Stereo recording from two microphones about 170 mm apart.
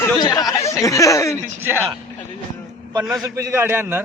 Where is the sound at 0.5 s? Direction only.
15° left (ahead or behind).